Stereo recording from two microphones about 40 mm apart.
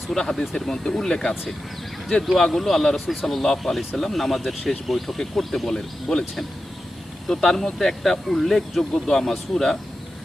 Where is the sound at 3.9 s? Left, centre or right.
Centre.